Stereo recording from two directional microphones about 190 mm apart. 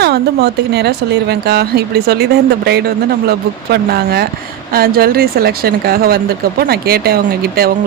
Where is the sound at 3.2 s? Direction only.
55° right (ahead or behind).